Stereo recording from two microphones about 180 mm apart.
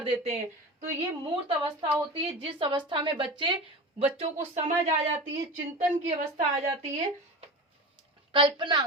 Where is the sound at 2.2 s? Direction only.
30° right (ahead or behind).